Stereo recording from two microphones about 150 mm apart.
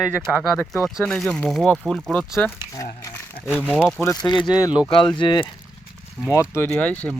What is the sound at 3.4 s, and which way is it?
Speech, 10° right (ahead or behind).